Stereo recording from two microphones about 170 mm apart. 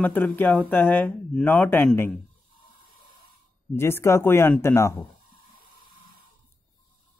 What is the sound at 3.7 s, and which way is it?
Speech, 15° left (ahead or behind).